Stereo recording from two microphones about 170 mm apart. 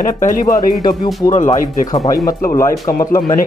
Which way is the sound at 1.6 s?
55° left (ahead or behind).